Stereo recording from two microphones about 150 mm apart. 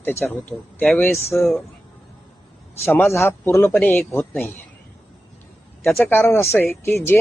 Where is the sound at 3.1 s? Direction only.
15° left (ahead or behind).